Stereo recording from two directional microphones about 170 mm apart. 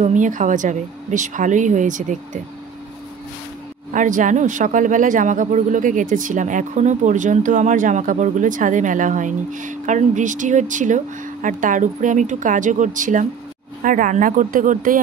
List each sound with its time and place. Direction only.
0.0 s speech: 45° right (ahead or behind)
3.9 s speech: 50° right (ahead or behind)